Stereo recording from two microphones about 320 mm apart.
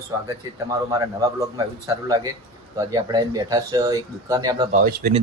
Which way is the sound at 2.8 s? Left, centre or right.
Centre.